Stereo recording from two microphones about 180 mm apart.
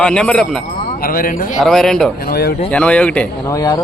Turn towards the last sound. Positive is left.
turn(degrees=25)  # may be behind; listen again after turning